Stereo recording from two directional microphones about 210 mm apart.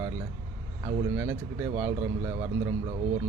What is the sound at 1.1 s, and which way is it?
Speech, 10° right (ahead or behind).